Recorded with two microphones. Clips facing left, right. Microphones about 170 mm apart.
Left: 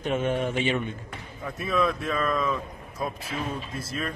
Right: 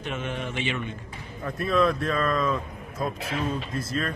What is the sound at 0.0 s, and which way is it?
Speech, 50° left (ahead or behind).